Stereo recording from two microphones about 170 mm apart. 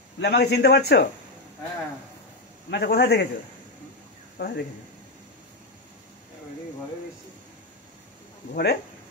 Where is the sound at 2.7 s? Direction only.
70° left (ahead or behind).